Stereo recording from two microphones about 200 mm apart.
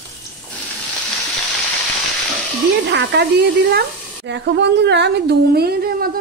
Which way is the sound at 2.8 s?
60° right (ahead or behind).